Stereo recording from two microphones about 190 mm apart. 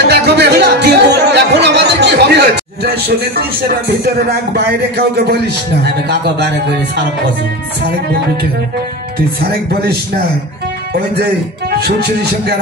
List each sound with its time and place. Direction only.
0.0 s a man's voice: 60° right (ahead or behind)
11.8 s a man's voice: 60° right (ahead or behind)